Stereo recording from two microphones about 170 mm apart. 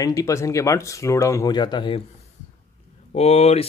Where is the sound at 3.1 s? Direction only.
40° left (ahead or behind).